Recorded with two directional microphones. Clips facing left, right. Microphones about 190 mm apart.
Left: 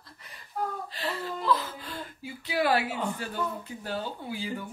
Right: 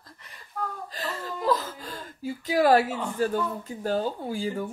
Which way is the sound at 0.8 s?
45° right (ahead or behind).